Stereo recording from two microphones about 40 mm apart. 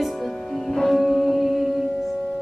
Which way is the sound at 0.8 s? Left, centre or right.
Centre.